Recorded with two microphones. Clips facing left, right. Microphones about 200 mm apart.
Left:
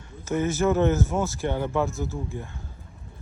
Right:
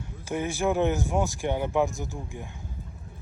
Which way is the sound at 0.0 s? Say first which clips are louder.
Left 4 dB; 10° right (ahead or behind).